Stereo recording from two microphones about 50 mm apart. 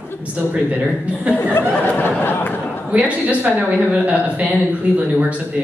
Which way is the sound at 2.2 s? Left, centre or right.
Left.